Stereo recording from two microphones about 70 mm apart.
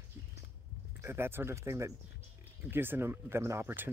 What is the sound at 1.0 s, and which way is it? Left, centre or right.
Speech, right.